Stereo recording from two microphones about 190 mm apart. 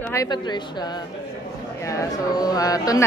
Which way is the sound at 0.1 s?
20° left (ahead or behind).